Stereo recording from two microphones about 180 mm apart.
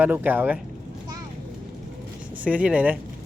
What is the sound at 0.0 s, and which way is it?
Speech, 10° right (ahead or behind).